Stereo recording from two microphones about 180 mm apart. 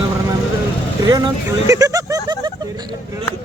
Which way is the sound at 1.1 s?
20° right (ahead or behind).